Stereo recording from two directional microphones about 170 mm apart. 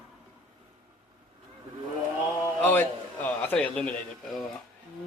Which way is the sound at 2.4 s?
10° left (ahead or behind).